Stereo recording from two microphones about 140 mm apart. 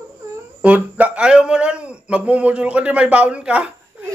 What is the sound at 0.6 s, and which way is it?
Speech, 10° right (ahead or behind).